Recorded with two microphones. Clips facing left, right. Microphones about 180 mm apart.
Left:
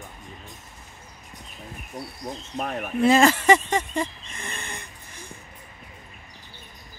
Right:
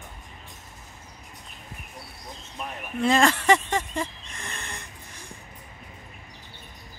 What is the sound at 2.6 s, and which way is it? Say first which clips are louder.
Speech: left 7 dB; 55° left (ahead or behind).